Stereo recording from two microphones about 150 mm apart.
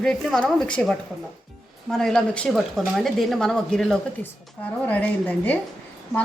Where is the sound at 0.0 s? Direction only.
5° left (ahead or behind).